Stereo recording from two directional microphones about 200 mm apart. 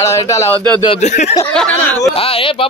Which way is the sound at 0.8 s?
30° left (ahead or behind).